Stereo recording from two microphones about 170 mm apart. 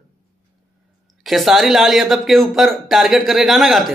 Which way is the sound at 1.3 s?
Centre (ahead or behind).